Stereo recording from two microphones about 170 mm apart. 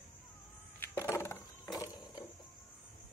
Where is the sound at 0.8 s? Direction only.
15° left (ahead or behind).